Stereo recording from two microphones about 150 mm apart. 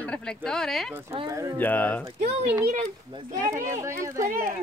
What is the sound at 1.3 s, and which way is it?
Speech, 20° right (ahead or behind).